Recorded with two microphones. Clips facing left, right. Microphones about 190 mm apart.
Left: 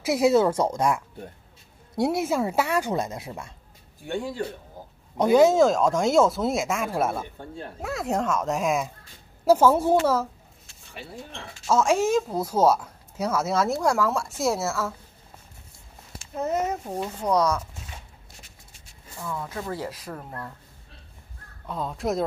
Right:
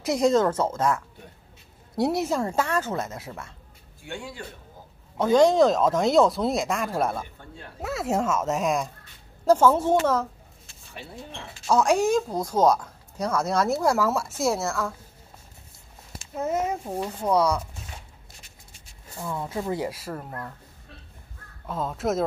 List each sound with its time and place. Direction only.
0.0 s a woman's voice: 5° left (ahead or behind)
2.0 s a woman's voice: centre (ahead or behind); by 3.5 s 15° left (ahead or behind)
4.0 s speech: 35° left (ahead or behind)
5.1 s a woman's voice: 10° left (ahead or behind)
11.6 s speech: centre (ahead or behind)
16.3 s speech: 5° right (ahead or behind)
19.1 s speech: 20° right (ahead or behind); by 20.3 s centre (ahead or behind)
21.6 s speech: centre (ahead or behind)